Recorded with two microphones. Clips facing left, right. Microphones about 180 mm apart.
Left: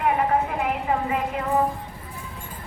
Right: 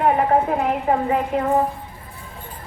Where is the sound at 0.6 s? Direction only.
40° right (ahead or behind).